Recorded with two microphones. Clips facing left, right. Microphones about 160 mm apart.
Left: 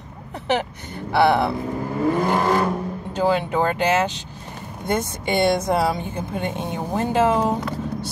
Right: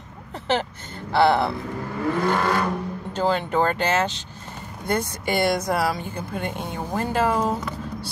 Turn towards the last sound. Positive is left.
turn(degrees=20)  # may be behind; listen again after turning